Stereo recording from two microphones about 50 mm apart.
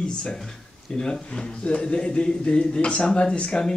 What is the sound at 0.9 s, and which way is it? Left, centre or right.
Speech, centre.